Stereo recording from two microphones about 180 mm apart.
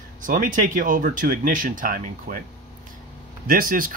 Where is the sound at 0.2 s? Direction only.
50° right (ahead or behind).